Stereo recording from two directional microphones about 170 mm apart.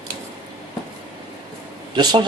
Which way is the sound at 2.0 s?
25° right (ahead or behind).